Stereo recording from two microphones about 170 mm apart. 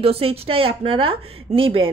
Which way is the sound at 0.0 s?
35° right (ahead or behind).